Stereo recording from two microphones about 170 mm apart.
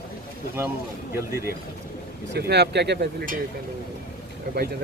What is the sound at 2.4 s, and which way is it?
Speech, 75° right (ahead or behind).